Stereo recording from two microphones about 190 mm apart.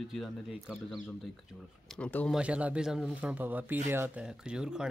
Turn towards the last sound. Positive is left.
turn(degrees=-5)  # may be behind; listen again after turning